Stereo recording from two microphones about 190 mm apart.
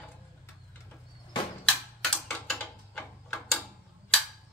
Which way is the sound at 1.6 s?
5° left (ahead or behind).